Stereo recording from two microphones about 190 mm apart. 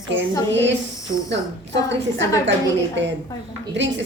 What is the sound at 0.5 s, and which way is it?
Speech, 70° right (ahead or behind).